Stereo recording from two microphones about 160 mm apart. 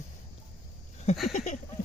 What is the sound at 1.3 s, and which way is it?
Speech, 50° left (ahead or behind).